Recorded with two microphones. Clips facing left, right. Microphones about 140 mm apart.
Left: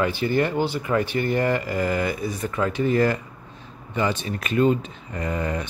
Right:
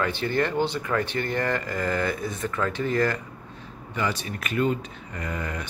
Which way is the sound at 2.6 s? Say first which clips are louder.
Left 4 dB; 15° left (ahead or behind).